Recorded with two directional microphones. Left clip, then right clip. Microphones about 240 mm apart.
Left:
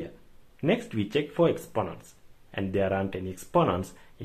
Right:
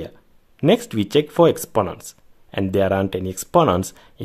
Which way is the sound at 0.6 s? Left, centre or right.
Right.